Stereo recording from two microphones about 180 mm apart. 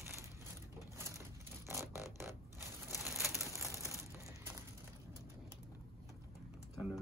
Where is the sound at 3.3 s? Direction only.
15° right (ahead or behind).